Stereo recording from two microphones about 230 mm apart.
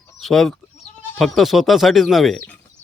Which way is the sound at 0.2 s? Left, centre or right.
Centre.